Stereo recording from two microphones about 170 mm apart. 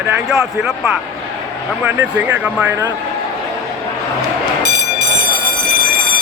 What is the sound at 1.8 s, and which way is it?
Speech, 10° right (ahead or behind).